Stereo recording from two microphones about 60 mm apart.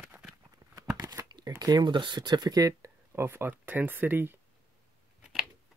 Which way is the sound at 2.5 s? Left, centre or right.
Right.